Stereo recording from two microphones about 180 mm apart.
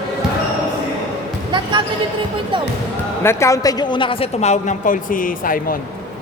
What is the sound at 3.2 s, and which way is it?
A woman's voice, 15° left (ahead or behind).